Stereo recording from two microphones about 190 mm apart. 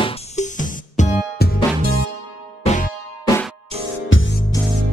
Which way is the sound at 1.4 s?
55° left (ahead or behind).